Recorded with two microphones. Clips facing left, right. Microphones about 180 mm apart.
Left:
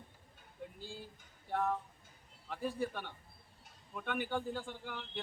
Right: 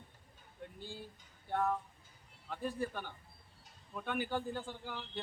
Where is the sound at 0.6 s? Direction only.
Centre (ahead or behind).